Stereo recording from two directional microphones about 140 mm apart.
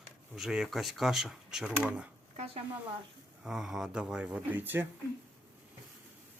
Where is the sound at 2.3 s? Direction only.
45° right (ahead or behind).